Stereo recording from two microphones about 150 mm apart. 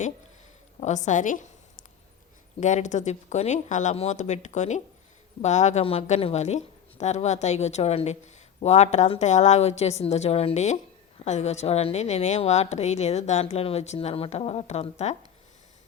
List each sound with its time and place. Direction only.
0.8 s a woman's voice: 50° left (ahead or behind)